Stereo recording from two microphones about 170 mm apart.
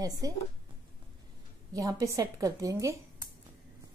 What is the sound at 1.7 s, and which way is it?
A woman's voice, 20° right (ahead or behind).